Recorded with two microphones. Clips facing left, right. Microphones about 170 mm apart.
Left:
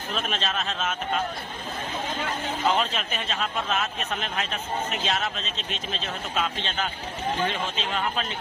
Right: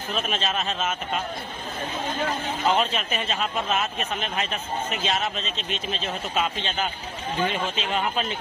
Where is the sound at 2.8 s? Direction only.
Centre (ahead or behind).